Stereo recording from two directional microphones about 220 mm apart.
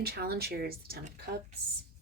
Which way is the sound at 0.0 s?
45° right (ahead or behind).